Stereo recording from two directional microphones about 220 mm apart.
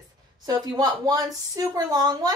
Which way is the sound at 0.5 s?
15° right (ahead or behind).